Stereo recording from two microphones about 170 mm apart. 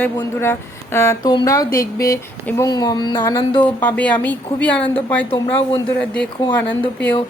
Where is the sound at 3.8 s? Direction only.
10° left (ahead or behind).